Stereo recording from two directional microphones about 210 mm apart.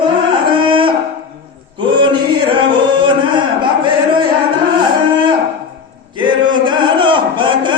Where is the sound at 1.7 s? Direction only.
20° right (ahead or behind).